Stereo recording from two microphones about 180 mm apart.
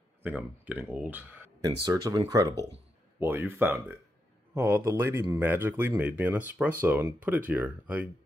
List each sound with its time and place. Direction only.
0.2 s speech: 10° right (ahead or behind)
1.9 s speech: 20° right (ahead or behind)